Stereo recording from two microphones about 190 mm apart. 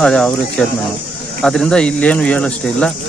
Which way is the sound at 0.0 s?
5° left (ahead or behind).